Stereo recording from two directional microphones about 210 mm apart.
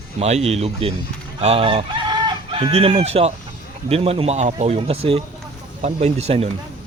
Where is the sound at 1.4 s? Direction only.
30° right (ahead or behind).